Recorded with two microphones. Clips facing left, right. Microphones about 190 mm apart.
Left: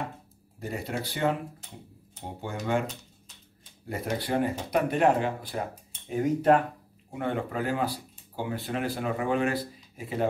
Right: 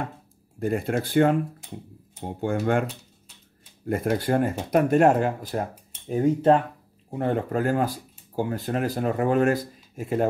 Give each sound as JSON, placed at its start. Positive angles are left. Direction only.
{"t": 0.6, "sound": "speech", "side_deg": -55}
{"t": 2.4, "sound": "speech", "side_deg": -55}
{"t": 3.9, "sound": "speech", "side_deg": -50}
{"t": 7.2, "sound": "speech", "side_deg": -40}